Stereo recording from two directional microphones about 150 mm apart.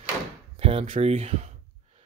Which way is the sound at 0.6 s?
40° right (ahead or behind).